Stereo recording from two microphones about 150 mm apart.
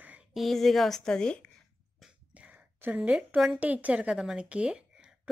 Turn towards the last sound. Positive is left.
turn(degrees=-5)  # may be behind; listen again after turning